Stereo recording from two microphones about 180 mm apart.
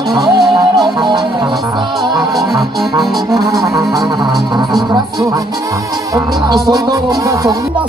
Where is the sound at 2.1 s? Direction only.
Centre (ahead or behind).